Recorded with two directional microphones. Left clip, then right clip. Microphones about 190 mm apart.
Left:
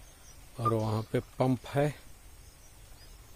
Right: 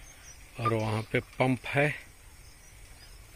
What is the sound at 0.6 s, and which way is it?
Speech, 5° left (ahead or behind).